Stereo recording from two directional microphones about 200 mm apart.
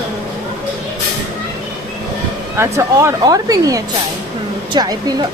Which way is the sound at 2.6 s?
15° right (ahead or behind).